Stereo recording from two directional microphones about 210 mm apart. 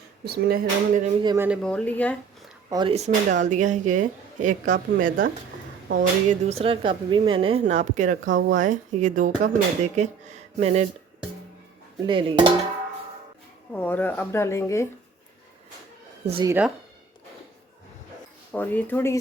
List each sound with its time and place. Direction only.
0.3 s speech: 45° right (ahead or behind)
1.2 s dishes: 20° right (ahead or behind)
1.5 s speech: 5° left (ahead or behind)
2.6 s speech: 20° right (ahead or behind)
8.2 s speech: 65° right (ahead or behind)
8.4 s speech: 40° right (ahead or behind)
12.0 s dishes: 25° right (ahead or behind)
13.7 s speech: 10° left (ahead or behind)
16.2 s speech: 25° right (ahead or behind)
16.5 s speech: 5° right (ahead or behind)
18.5 s speech: 10° left (ahead or behind)